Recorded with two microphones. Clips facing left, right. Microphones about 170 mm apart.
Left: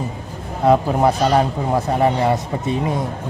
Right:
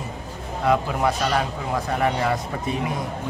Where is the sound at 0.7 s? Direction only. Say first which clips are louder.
Left 6 dB; 30° left (ahead or behind).